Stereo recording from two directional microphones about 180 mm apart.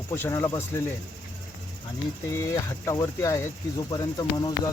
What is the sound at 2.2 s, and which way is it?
Speech, 15° left (ahead or behind).